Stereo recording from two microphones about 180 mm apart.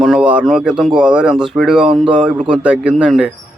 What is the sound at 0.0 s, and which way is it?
A man's voice, 5° right (ahead or behind).